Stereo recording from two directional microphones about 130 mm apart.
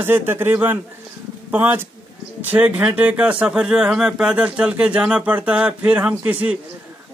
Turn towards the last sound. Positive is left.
turn(degrees=-10)  # may be behind; listen again after turning